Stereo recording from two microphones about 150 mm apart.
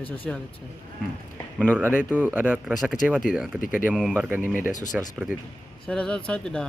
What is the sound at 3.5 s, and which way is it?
Speech, 65° left (ahead or behind).